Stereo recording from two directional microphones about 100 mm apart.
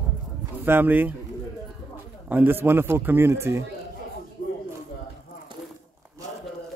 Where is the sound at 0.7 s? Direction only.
20° right (ahead or behind).